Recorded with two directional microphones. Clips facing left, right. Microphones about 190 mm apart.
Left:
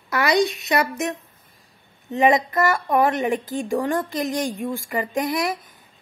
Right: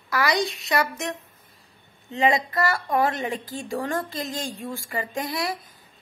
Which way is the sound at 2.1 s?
20° left (ahead or behind).